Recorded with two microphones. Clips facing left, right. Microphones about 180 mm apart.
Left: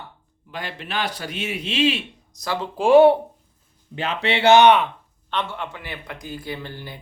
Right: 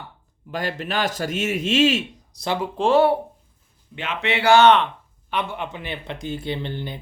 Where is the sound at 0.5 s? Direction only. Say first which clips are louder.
Right 4 dB; 45° right (ahead or behind).